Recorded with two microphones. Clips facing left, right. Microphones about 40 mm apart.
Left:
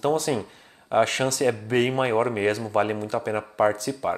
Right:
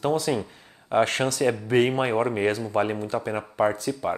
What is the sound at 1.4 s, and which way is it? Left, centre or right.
Speech, centre.